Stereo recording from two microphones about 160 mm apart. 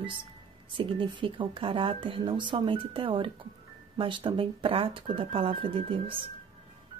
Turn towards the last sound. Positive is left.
turn(degrees=-35)  # may be behind; listen again after turning